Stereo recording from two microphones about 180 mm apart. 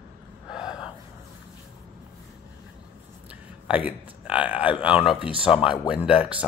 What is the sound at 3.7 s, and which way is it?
Speech, 10° right (ahead or behind).